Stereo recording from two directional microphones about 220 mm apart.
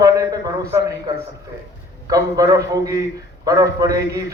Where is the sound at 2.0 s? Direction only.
15° right (ahead or behind).